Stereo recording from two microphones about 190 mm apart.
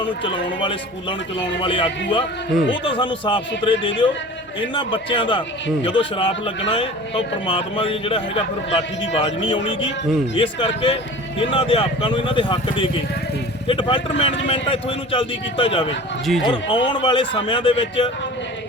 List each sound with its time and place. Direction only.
0.0 s speech: 25° left (ahead or behind)
16.2 s speech: centre (ahead or behind)
16.5 s speech: 25° left (ahead or behind)